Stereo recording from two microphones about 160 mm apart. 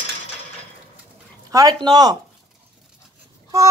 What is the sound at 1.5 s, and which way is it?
Speech, 25° right (ahead or behind).